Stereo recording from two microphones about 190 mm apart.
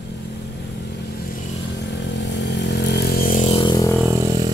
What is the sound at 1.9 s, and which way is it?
Motorcycle, 70° left (ahead or behind).